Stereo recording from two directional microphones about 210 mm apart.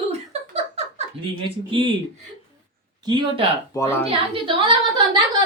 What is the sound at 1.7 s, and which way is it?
Speech, 25° right (ahead or behind).